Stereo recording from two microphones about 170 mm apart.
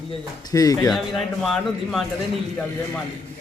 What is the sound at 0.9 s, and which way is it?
A man's voice, centre (ahead or behind).